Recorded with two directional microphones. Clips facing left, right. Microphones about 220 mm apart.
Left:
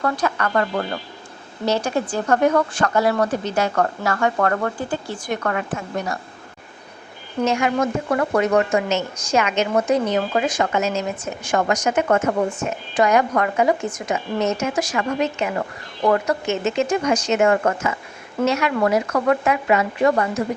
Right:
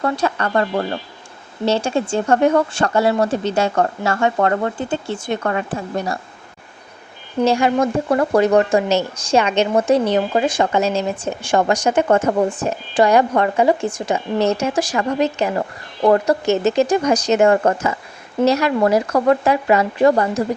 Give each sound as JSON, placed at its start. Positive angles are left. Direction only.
{"t": 0.0, "sound": "speech", "side_deg": -30}
{"t": 7.4, "sound": "speech", "side_deg": -30}